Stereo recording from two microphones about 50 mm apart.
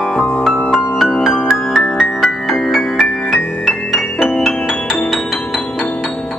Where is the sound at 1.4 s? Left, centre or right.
Centre.